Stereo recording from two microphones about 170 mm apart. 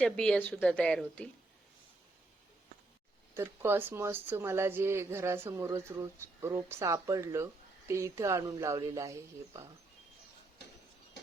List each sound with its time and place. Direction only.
0.0 s speech: 5° left (ahead or behind)
3.3 s speech: 15° right (ahead or behind)